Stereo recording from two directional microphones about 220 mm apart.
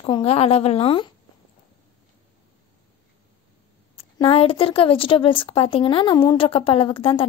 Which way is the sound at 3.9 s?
25° left (ahead or behind).